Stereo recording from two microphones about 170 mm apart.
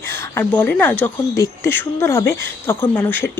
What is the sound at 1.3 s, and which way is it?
Speech, 20° left (ahead or behind).